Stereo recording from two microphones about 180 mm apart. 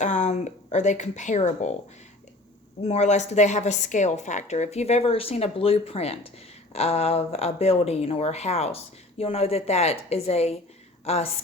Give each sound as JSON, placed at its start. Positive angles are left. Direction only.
{"t": 0.0, "sound": "speech", "side_deg": 40}
{"t": 2.8, "sound": "a woman's voice", "side_deg": 35}